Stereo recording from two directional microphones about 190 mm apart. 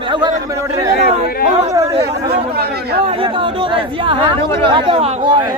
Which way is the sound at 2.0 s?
55° right (ahead or behind).